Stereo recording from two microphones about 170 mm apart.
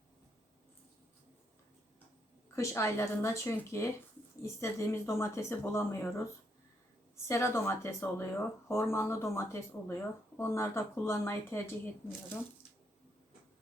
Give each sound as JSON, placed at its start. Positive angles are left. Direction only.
{"t": 2.6, "sound": "speech", "side_deg": 15}
{"t": 7.3, "sound": "speech", "side_deg": 15}